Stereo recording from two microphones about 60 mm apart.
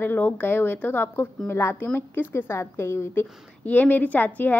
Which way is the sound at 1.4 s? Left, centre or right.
Left.